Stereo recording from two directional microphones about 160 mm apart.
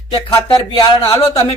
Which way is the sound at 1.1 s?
20° left (ahead or behind).